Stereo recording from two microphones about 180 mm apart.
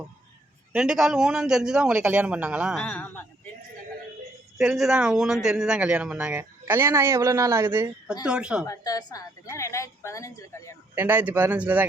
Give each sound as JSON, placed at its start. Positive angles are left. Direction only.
{"t": 0.7, "sound": "a man's voice", "side_deg": -5}
{"t": 2.8, "sound": "a woman's voice", "side_deg": 10}
{"t": 4.5, "sound": "a man's voice", "side_deg": 0}
{"t": 8.6, "sound": "a woman's voice", "side_deg": 20}
{"t": 10.9, "sound": "speech", "side_deg": -10}